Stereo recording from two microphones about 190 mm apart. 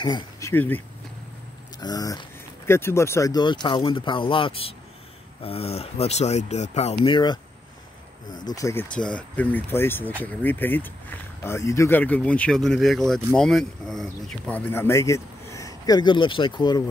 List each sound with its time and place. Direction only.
0.0 s speech: 20° left (ahead or behind); by 7.2 s 35° left (ahead or behind)
8.5 s speech: 15° left (ahead or behind)
8.9 s speech: 5° left (ahead or behind); by 16.8 s 20° left (ahead or behind)